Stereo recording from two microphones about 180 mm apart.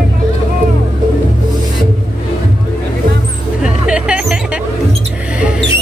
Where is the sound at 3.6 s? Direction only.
5° right (ahead or behind).